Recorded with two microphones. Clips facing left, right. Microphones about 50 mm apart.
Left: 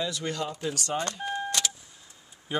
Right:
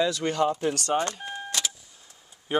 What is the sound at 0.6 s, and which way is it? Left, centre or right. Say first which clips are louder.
Speech: right 5 dB; right.